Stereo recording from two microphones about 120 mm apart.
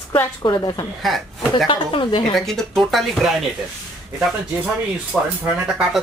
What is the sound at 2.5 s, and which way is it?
Speech, centre (ahead or behind).